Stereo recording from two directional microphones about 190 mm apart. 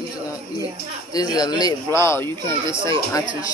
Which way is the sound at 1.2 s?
20° left (ahead or behind).